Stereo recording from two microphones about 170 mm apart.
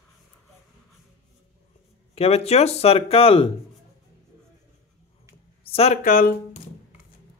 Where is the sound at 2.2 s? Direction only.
35° left (ahead or behind).